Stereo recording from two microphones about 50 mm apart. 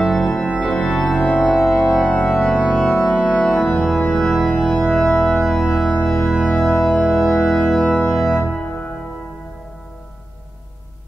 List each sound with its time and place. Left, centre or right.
0.0 s organ: centre
0.4 s organ: centre
3.2 s organ: centre
7.1 s music: centre
7.3 s organ: centre
8.5 s music: left